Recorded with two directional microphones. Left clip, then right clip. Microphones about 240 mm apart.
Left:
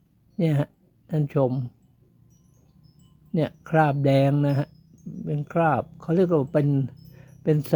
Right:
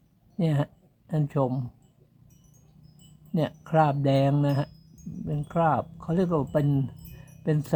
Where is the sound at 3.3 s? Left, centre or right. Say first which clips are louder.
Left 2 dB; centre.